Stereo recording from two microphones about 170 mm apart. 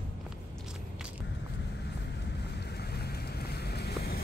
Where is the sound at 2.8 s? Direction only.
70° left (ahead or behind).